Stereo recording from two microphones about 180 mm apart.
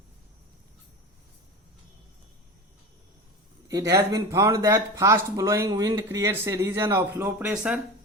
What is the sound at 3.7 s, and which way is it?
Speech, 20° right (ahead or behind).